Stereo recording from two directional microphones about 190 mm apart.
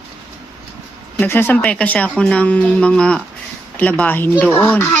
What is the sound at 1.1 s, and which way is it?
Speech, 10° left (ahead or behind).